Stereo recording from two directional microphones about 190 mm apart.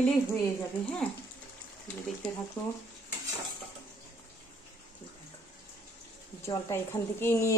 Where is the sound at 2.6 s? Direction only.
15° left (ahead or behind).